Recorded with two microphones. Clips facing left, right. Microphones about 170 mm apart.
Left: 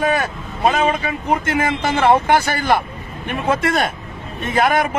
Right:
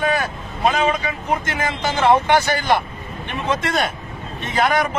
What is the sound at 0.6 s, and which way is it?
Speech, 55° left (ahead or behind).